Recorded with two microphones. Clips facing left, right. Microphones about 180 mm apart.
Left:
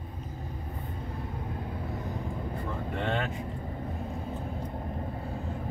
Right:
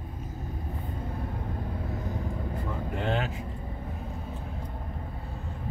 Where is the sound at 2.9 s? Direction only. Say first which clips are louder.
Right 1 dB; 5° right (ahead or behind).